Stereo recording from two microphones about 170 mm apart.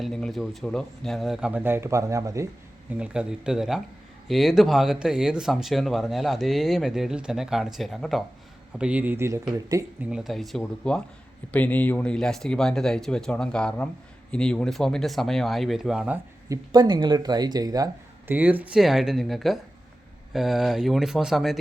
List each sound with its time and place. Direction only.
0.0 s speech: centre (ahead or behind); by 2.5 s 20° right (ahead or behind)
2.9 s speech: 5° right (ahead or behind)
10.0 s speech: 5° right (ahead or behind)
16.5 s speech: 25° right (ahead or behind)
18.3 s speech: 10° right (ahead or behind)